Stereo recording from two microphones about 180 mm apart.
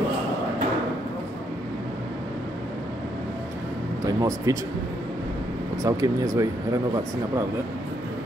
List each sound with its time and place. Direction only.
4.0 s speech: 20° right (ahead or behind)
5.8 s speech: 20° right (ahead or behind)